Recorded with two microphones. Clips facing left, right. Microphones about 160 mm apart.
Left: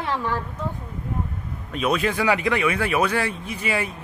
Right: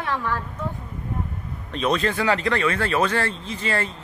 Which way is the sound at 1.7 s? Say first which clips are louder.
Even; 10° left (ahead or behind).